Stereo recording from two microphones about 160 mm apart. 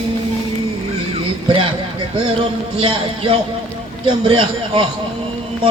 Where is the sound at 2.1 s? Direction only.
35° right (ahead or behind).